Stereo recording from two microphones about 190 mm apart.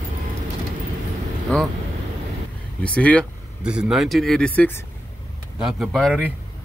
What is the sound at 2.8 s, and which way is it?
Speech, 5° left (ahead or behind).